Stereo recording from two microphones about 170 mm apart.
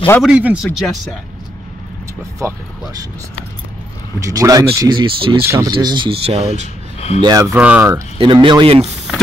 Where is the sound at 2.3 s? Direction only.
20° right (ahead or behind).